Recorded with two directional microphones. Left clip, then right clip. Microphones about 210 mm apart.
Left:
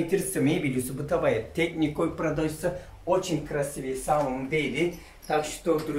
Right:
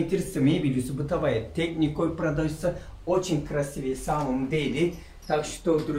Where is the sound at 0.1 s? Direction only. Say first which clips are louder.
Even; 20° left (ahead or behind).